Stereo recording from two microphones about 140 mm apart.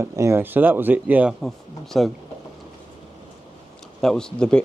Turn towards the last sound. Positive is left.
turn(degrees=5)  # may be behind; listen again after turning